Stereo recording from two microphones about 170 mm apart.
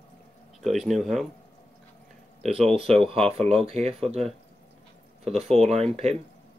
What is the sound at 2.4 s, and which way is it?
Speech, 35° right (ahead or behind).